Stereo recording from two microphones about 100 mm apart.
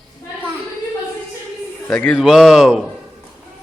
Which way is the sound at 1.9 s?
10° left (ahead or behind).